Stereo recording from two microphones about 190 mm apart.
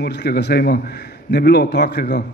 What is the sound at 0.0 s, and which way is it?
Speech, 60° left (ahead or behind).